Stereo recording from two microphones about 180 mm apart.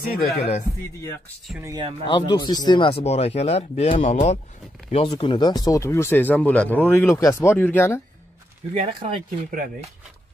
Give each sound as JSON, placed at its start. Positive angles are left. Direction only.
{"t": 0.4, "sound": "speech", "side_deg": 35}
{"t": 1.6, "sound": "speech", "side_deg": -20}
{"t": 2.0, "sound": "speech", "side_deg": 25}
{"t": 5.0, "sound": "speech", "side_deg": 25}
{"t": 8.7, "sound": "speech", "side_deg": -35}